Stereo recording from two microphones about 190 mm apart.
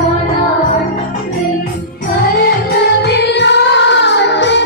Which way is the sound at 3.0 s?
60° left (ahead or behind).